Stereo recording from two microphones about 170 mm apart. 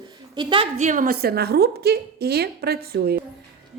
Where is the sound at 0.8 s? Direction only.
50° right (ahead or behind); by 3.2 s 65° right (ahead or behind).